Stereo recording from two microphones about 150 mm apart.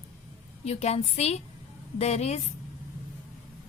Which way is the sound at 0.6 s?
45° left (ahead or behind).